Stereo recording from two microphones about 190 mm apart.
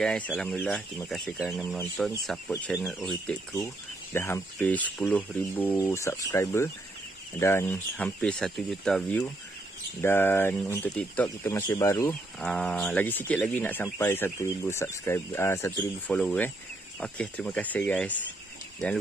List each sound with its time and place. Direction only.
0.0 s speech: 5° left (ahead or behind)
3.5 s speech: 15° left (ahead or behind)
10.0 s speech: 10° left (ahead or behind)
12.4 s speech: 5° left (ahead or behind)